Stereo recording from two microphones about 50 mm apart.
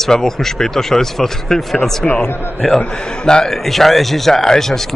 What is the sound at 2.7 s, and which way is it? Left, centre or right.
A man's voice, centre.